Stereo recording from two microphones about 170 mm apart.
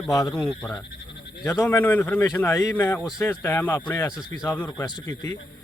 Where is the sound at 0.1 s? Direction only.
20° left (ahead or behind).